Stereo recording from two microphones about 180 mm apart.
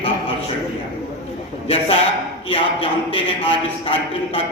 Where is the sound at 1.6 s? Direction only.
35° left (ahead or behind).